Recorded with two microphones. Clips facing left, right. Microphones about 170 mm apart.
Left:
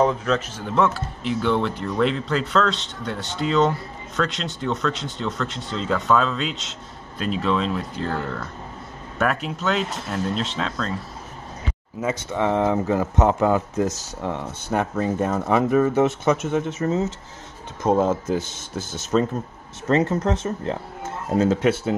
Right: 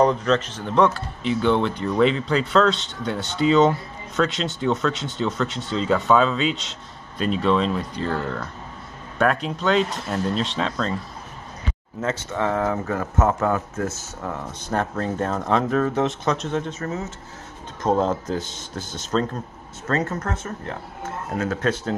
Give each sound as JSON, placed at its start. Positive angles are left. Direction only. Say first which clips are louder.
{"t": 0.0, "sound": "speech", "louder": "right 2 dB", "side_deg": 5}
{"t": 12.0, "sound": "speech", "louder": "left 1 dB", "side_deg": 15}
{"t": 14.7, "sound": "speech", "louder": "left 2 dB", "side_deg": 10}
{"t": 17.8, "sound": "speech", "louder": "left 2 dB", "side_deg": 5}
{"t": 19.9, "sound": "speech", "louder": "left 5 dB", "side_deg": 15}